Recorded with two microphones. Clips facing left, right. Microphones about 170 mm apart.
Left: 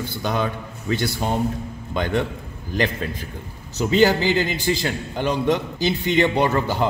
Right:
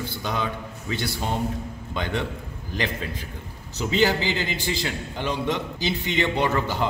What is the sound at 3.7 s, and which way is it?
A man's voice, 45° left (ahead or behind).